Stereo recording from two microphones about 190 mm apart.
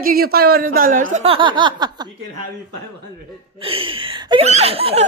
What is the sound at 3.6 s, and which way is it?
Speech, 30° right (ahead or behind).